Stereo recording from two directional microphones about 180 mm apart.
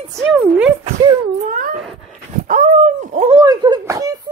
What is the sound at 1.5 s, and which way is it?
Wail, 50° right (ahead or behind).